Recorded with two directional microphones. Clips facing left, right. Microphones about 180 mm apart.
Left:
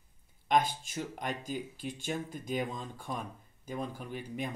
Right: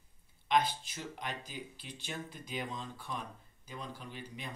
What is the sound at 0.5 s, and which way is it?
Speech, 45° left (ahead or behind).